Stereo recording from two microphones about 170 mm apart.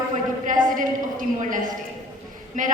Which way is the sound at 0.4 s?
50° right (ahead or behind).